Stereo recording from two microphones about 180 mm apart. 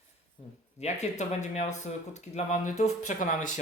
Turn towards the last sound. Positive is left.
turn(degrees=45)  # may be behind; listen again after turning